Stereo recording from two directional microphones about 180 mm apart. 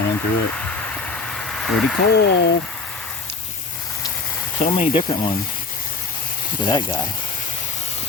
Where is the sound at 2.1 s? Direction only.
70° left (ahead or behind).